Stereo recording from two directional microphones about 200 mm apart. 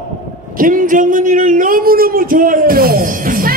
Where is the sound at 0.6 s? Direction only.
40° right (ahead or behind).